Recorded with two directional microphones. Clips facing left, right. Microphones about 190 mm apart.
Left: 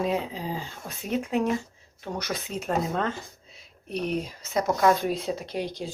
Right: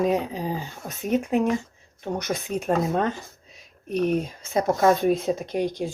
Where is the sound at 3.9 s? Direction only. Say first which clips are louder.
Right 6 dB; 50° right (ahead or behind).